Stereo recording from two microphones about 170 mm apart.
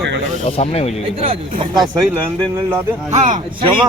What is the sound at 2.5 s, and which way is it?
Speech, 10° right (ahead or behind).